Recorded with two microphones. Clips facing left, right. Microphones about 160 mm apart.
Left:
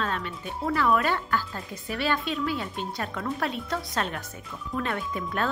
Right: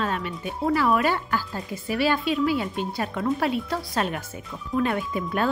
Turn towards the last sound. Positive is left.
turn(degrees=-10)  # may be behind; listen again after turning